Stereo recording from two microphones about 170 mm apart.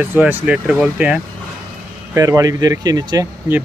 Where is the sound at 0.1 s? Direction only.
10° right (ahead or behind).